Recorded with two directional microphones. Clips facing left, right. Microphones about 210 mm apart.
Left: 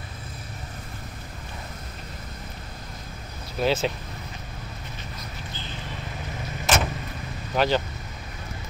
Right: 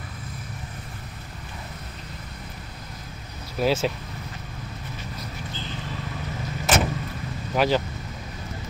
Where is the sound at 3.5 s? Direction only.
5° right (ahead or behind).